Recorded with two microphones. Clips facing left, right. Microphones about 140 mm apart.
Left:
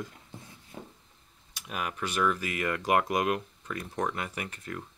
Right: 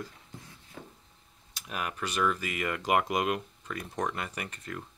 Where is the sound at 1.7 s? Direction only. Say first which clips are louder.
Left 1 dB; 5° left (ahead or behind).